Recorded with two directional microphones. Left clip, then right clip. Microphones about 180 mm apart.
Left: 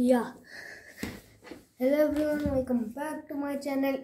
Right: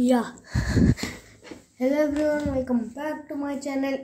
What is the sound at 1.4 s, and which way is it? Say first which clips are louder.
A child's voice: right 3 dB; 5° right (ahead or behind).